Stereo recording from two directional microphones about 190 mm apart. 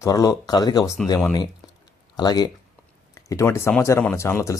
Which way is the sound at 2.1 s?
20° left (ahead or behind).